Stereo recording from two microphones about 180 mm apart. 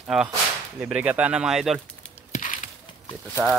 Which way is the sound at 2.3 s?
45° left (ahead or behind).